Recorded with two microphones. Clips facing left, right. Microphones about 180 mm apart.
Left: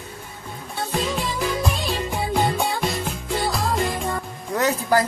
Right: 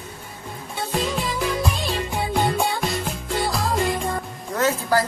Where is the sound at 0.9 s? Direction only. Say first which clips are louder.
Right 1 dB; centre (ahead or behind).